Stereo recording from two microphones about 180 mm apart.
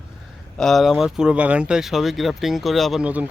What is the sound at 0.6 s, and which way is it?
Speech, centre (ahead or behind).